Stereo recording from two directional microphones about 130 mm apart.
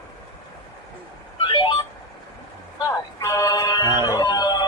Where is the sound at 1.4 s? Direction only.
40° left (ahead or behind).